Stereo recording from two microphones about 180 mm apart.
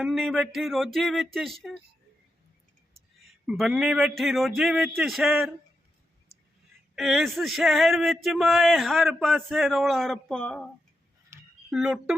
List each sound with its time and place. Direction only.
0.0 s speech: centre (ahead or behind)
3.4 s speech: 5° right (ahead or behind)
6.9 s speech: centre (ahead or behind)
11.3 s a sound: 15° right (ahead or behind)
11.7 s speech: 5° right (ahead or behind)